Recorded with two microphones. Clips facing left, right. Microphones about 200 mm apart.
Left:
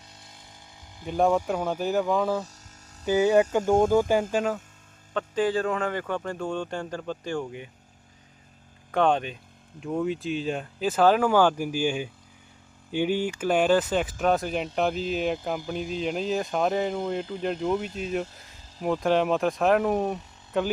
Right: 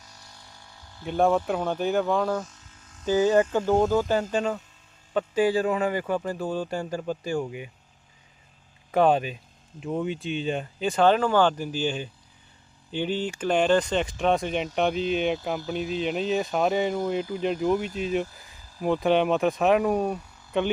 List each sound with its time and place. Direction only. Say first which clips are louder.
0.0 s a sound: even; 25° left (ahead or behind)
1.0 s speech: right 1 dB; centre (ahead or behind)
1.3 s speech: even; 10° left (ahead or behind)
2.4 s a sound: even; 40° left (ahead or behind)
3.1 s speech: even; 10° left (ahead or behind)
5.1 s speech: right 2 dB; 10° right (ahead or behind)
8.9 s speech: right 2 dB; 5° right (ahead or behind)
20.0 s speech: right 1 dB; 20° left (ahead or behind)
20.5 s speech: right 1 dB; centre (ahead or behind)